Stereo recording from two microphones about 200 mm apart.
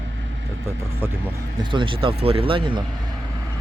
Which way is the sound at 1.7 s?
25° right (ahead or behind).